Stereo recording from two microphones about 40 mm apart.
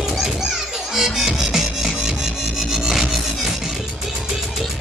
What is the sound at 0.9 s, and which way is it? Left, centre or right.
Music, centre.